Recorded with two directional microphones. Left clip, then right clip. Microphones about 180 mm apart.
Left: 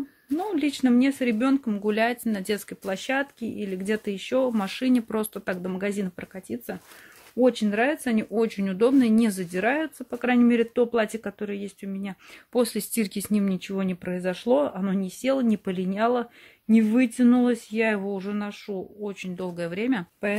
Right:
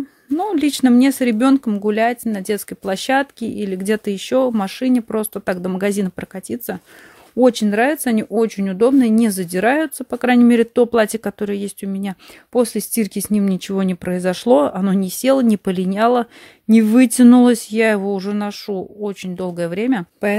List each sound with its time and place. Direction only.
0.4 s speech: 55° right (ahead or behind)
12.5 s speech: 40° right (ahead or behind)